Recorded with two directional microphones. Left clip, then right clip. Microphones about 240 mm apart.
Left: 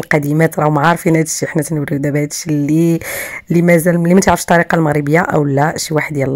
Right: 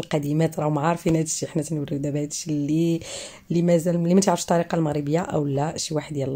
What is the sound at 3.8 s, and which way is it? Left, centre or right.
Speech, left.